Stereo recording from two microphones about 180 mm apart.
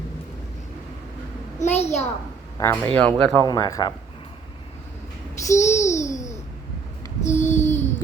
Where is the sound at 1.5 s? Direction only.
40° left (ahead or behind).